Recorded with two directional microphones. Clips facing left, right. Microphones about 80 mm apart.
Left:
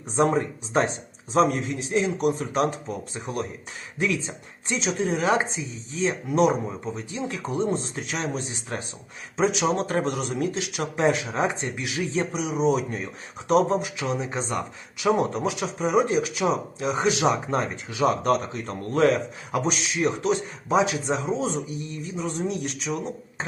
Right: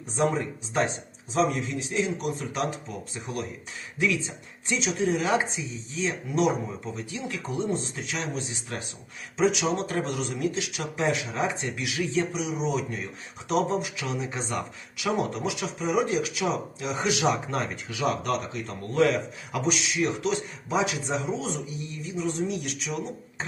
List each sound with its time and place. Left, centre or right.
0.2 s speech: left